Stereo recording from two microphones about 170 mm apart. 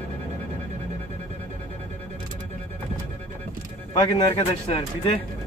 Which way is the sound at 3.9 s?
25° left (ahead or behind).